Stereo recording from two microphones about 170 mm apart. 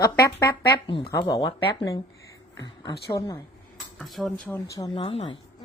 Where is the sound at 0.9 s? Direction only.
30° left (ahead or behind).